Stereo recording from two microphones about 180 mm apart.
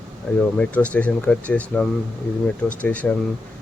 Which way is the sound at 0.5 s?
5° left (ahead or behind).